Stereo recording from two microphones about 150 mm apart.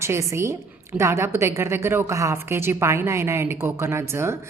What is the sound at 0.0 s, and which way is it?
A woman's voice, 20° right (ahead or behind).